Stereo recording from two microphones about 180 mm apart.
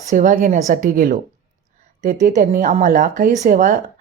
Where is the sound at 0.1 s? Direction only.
45° right (ahead or behind).